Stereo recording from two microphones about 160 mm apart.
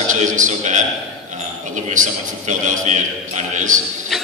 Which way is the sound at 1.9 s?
50° right (ahead or behind).